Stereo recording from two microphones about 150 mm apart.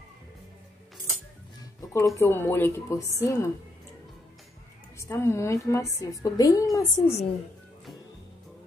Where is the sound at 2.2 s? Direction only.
15° left (ahead or behind).